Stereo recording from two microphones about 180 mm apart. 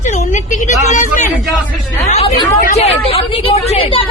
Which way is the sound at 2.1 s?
35° left (ahead or behind).